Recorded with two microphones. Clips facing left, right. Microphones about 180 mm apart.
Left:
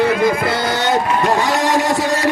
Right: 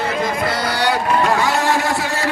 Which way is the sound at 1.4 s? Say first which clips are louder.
Left 1 dB; 40° left (ahead or behind).